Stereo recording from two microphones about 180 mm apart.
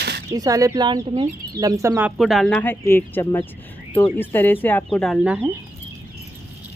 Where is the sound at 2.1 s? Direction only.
Centre (ahead or behind).